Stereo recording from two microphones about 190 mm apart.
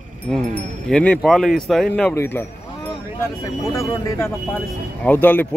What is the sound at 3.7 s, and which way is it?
Speech, 15° left (ahead or behind).